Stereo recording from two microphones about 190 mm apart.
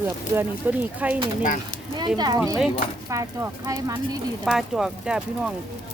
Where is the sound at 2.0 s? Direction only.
20° right (ahead or behind).